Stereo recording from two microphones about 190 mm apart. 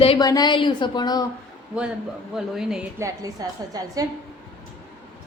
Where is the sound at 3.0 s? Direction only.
20° right (ahead or behind).